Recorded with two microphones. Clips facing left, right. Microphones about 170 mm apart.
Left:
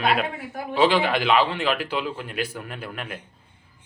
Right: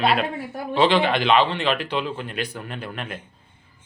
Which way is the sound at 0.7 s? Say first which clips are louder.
Right 1 dB; 5° left (ahead or behind).